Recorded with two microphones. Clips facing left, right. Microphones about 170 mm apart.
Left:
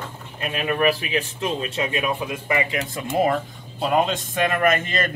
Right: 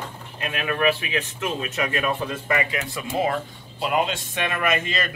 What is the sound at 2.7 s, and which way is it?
Speech, 45° left (ahead or behind).